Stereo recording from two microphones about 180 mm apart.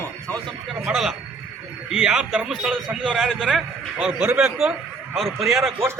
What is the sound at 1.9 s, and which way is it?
A man's voice, 5° right (ahead or behind).